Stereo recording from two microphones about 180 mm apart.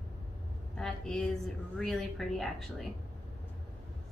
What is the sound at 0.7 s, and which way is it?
Speech, 5° left (ahead or behind).